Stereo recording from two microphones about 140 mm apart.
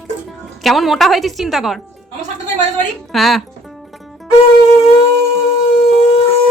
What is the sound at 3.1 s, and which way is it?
Speech, centre (ahead or behind).